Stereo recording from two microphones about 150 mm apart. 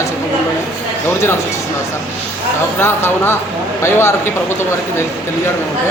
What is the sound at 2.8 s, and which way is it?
Speech, 15° left (ahead or behind).